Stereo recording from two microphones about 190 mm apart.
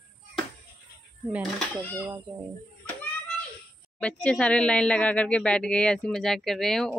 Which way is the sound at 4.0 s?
5° left (ahead or behind).